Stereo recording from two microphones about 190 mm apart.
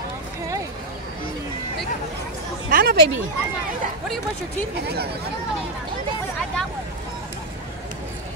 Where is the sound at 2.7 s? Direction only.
55° right (ahead or behind).